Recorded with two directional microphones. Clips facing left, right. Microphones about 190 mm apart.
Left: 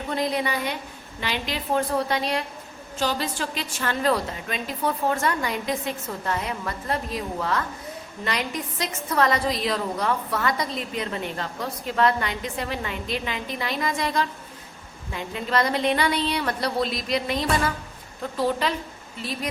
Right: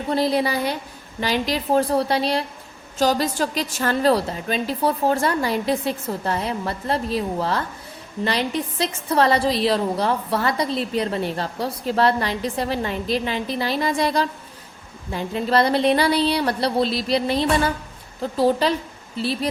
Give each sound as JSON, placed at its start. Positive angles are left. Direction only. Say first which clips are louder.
{"t": 0.1, "sound": "a woman's voice", "louder": "right 5 dB", "side_deg": -35}